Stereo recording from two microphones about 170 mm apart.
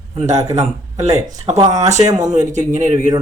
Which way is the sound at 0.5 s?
40° right (ahead or behind).